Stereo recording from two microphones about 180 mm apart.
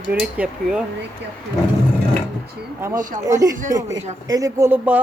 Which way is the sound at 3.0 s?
45° right (ahead or behind).